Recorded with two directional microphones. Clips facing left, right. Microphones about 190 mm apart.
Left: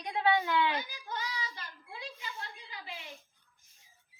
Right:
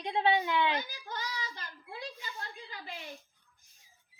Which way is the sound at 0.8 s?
45° right (ahead or behind).